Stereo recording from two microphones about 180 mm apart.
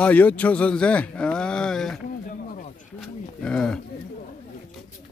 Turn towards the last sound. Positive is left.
turn(degrees=5)  # may be behind; listen again after turning